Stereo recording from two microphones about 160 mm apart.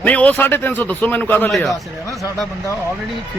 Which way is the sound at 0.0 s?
10° left (ahead or behind).